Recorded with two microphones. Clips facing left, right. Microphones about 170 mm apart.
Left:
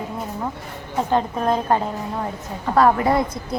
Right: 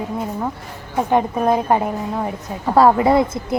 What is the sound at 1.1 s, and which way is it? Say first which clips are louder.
A woman's voice: right 4 dB; 15° right (ahead or behind).